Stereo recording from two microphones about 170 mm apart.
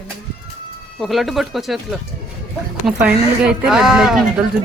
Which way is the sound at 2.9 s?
5° right (ahead or behind).